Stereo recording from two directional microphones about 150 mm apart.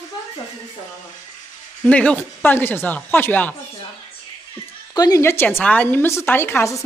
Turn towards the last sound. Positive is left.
turn(degrees=20)  # may be behind; listen again after turning